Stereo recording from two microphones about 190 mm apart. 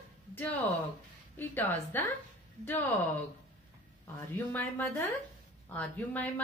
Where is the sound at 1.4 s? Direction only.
10° left (ahead or behind).